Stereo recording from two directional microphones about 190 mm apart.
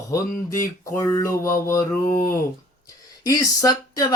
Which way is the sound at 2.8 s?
20° left (ahead or behind).